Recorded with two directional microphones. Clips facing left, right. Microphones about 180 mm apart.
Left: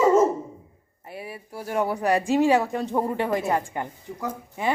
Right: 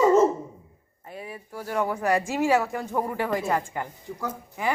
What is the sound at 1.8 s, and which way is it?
Speech, 35° left (ahead or behind).